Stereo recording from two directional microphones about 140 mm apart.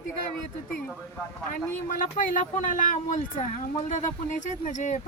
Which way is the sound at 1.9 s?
65° left (ahead or behind).